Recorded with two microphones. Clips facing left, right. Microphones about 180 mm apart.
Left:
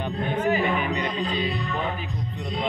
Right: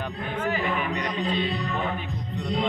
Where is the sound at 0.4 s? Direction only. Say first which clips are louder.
Left 4 dB; 20° left (ahead or behind).